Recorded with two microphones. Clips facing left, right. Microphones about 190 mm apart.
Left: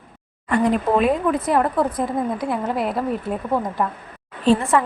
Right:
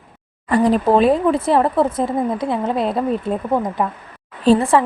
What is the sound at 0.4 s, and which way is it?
A woman's voice, 35° right (ahead or behind).